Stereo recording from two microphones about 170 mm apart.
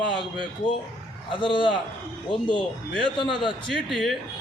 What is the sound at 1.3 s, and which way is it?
A man's voice, 30° left (ahead or behind).